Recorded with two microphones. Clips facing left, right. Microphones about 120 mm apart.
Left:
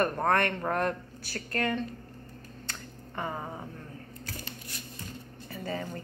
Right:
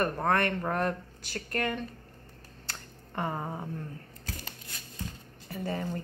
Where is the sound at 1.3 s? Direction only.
15° right (ahead or behind).